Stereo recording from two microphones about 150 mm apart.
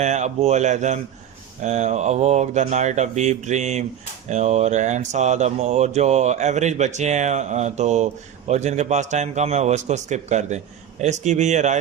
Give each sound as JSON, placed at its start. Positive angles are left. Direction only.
{"t": 0.0, "sound": "speech", "side_deg": -50}